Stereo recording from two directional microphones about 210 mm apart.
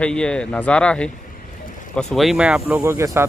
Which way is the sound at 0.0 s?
5° left (ahead or behind).